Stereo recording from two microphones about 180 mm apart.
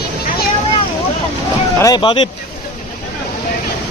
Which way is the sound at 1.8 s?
25° left (ahead or behind).